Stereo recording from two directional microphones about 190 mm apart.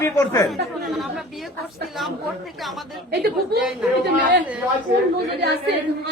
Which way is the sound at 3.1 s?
55° right (ahead or behind).